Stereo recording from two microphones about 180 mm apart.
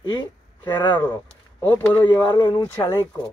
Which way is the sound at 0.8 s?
25° left (ahead or behind).